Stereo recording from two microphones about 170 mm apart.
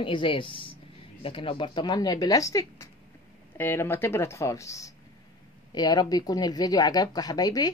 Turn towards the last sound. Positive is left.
turn(degrees=20)  # may be behind; listen again after turning